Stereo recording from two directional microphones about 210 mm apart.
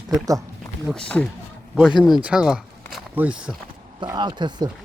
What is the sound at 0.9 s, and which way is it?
Speech, 5° left (ahead or behind).